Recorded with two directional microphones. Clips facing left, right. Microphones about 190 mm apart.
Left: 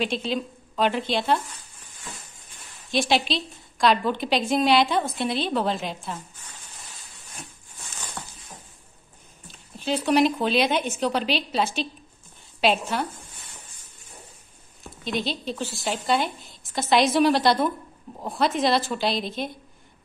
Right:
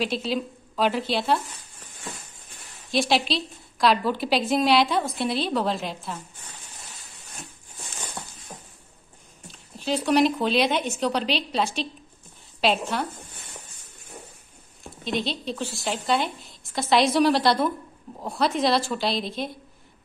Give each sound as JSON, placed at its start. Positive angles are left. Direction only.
{"t": 0.0, "sound": "speech", "side_deg": -5}
{"t": 2.9, "sound": "speech", "side_deg": 0}
{"t": 8.2, "sound": "a sound", "side_deg": -25}
{"t": 9.5, "sound": "a woman's voice", "side_deg": 0}
{"t": 14.8, "sound": "speech", "side_deg": 0}